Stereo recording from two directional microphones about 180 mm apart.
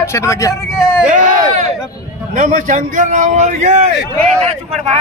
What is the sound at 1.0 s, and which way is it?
A man's voice, 45° right (ahead or behind).